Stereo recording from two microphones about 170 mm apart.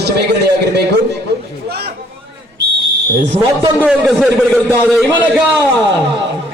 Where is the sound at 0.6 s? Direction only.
80° right.